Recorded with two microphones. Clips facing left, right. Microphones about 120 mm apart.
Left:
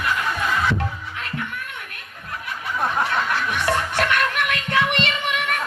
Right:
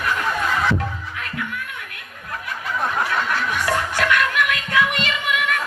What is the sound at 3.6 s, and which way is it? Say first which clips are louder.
Music: left 1 dB; 30° left (ahead or behind).